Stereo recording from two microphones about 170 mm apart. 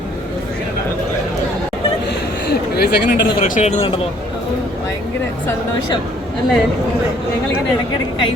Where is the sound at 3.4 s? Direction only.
45° left (ahead or behind).